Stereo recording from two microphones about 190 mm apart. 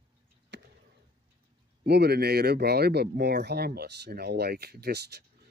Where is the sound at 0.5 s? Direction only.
65° right (ahead or behind).